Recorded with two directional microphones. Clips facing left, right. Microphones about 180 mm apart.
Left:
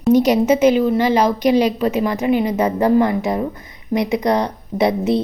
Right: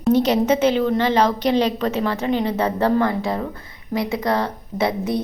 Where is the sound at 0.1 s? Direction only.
10° left (ahead or behind).